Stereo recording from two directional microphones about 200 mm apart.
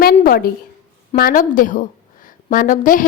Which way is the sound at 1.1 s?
45° left (ahead or behind).